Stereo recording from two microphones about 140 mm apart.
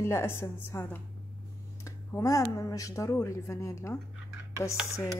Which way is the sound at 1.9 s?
20° left (ahead or behind).